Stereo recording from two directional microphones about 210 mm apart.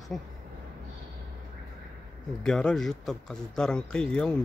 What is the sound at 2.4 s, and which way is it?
Speech, 5° left (ahead or behind).